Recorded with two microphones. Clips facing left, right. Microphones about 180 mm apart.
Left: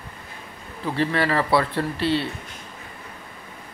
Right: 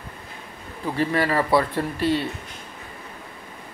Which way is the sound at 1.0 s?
10° right (ahead or behind).